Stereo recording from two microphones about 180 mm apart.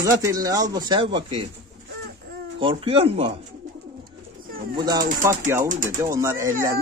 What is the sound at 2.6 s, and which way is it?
Speech, 30° right (ahead or behind).